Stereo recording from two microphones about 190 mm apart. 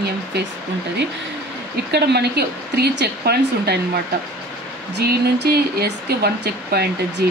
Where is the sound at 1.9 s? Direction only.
60° right (ahead or behind).